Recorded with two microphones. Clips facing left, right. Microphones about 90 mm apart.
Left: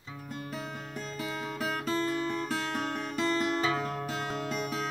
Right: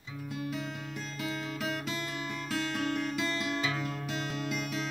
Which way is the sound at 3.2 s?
40° left (ahead or behind).